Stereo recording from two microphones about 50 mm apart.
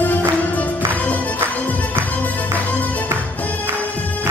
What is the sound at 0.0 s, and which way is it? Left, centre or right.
Music, left.